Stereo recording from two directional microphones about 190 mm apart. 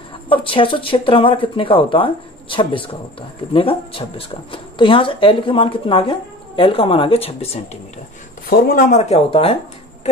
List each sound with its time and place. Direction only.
0.3 s speech: 30° left (ahead or behind)
8.5 s speech: 55° left (ahead or behind)
8.9 s speech: 35° left (ahead or behind)